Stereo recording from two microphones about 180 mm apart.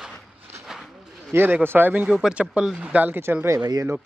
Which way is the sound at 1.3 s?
10° right (ahead or behind).